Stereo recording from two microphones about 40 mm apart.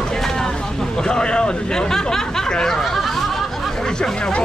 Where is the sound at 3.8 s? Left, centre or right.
Centre.